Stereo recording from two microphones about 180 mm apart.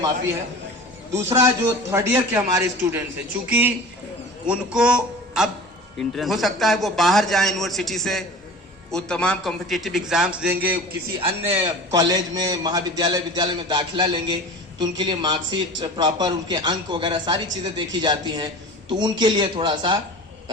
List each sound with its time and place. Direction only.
1.1 s a man's voice: 15° right (ahead or behind)
4.4 s a man's voice: 5° right (ahead or behind)
11.2 s a man's voice: 30° right (ahead or behind)
11.5 s a man's voice: 20° right (ahead or behind)